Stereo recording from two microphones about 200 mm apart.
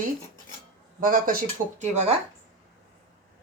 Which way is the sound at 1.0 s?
45° right (ahead or behind).